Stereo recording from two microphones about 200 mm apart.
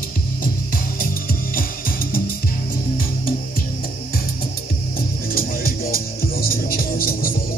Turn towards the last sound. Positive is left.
turn(degrees=45)  # may be behind; listen again after turning